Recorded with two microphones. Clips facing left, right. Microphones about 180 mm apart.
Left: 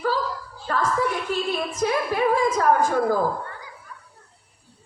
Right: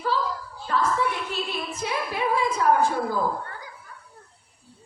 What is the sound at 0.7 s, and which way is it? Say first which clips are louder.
Music: left 1 dB; 45° left (ahead or behind).